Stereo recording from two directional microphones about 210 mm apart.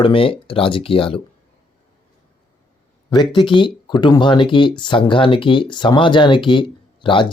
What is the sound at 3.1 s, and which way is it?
Speech, 20° left (ahead or behind).